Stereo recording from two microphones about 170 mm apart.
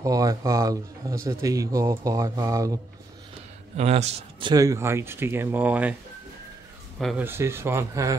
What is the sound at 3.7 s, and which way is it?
Speech, 40° right (ahead or behind).